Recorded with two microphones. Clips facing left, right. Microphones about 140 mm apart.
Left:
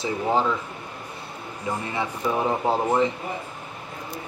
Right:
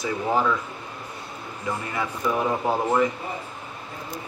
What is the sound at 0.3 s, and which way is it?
Speech, 25° left (ahead or behind).